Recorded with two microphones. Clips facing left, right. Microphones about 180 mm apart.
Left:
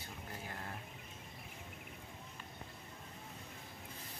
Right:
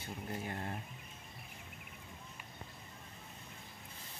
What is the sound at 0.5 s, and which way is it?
Bird, 25° right (ahead or behind).